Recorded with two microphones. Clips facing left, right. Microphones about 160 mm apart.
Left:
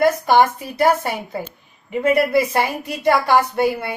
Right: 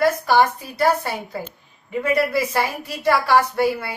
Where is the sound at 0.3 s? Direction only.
20° left (ahead or behind).